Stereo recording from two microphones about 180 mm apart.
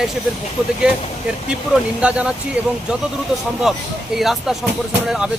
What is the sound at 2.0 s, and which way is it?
Speech, 5° right (ahead or behind).